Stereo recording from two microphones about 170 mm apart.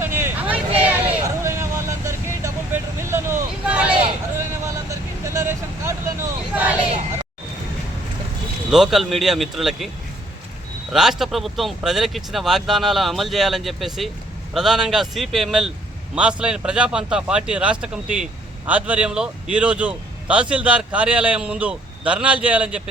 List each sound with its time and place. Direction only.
0.2 s vehicle: 10° right (ahead or behind)
8.7 s speech: centre (ahead or behind)
10.9 s a man's voice: centre (ahead or behind)